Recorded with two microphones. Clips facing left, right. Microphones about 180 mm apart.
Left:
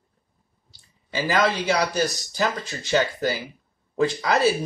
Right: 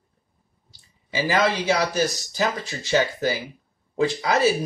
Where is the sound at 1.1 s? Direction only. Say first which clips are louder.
Even; 20° right (ahead or behind).